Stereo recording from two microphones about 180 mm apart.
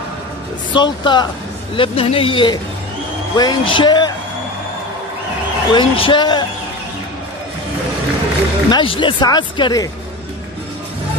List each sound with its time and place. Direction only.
0.7 s speech: 25° left (ahead or behind)
5.7 s speech: 25° left (ahead or behind)
8.6 s speech: 25° left (ahead or behind)